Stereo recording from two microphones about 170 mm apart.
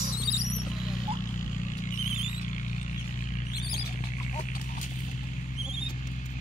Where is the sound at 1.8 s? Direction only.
45° left (ahead or behind).